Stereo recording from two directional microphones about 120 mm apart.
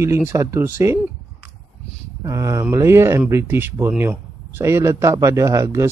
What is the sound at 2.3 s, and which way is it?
Speech, 25° right (ahead or behind).